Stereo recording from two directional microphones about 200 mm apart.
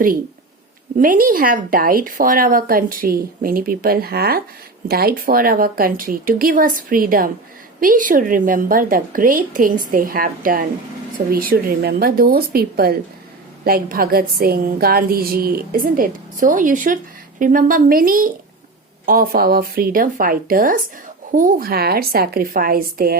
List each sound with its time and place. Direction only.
0.9 s speech: 45° right (ahead or behind)